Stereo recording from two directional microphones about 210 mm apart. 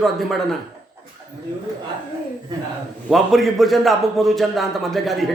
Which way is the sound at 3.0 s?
Centre (ahead or behind).